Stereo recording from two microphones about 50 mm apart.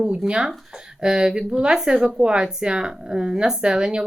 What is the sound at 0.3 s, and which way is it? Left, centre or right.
Speech, centre.